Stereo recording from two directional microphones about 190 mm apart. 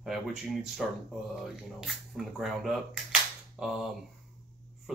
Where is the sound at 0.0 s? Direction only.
Centre (ahead or behind).